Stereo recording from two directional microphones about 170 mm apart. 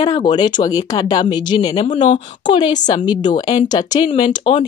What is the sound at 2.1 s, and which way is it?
Speech, 25° left (ahead or behind).